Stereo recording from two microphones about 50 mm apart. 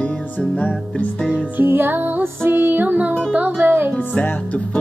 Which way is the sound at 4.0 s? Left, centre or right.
Left.